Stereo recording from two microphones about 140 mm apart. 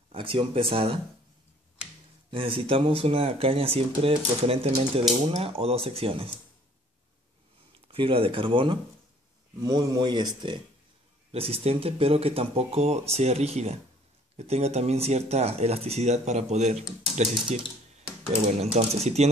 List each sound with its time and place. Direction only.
0.1 s speech: 40° right (ahead or behind)
2.3 s speech: 40° right (ahead or behind)
7.9 s speech: 40° right (ahead or behind)
11.3 s speech: 45° right (ahead or behind)
18.6 s speech: 50° right (ahead or behind)